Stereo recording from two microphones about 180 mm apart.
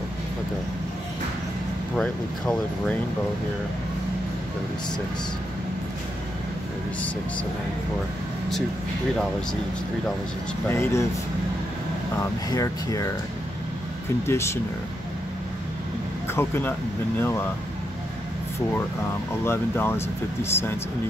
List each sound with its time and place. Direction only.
2.0 s speech: 5° left (ahead or behind)
10.7 s speech: 15° left (ahead or behind)
12.2 s speech: 20° left (ahead or behind)
14.2 s speech: 15° left (ahead or behind)
16.3 s speech: 10° left (ahead or behind)
19.4 s speech: 10° left (ahead or behind)